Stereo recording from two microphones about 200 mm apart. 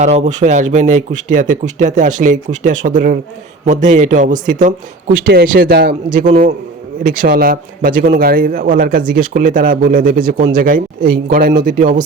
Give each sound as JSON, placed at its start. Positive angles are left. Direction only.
{"t": 0.0, "sound": "a man's voice", "side_deg": -35}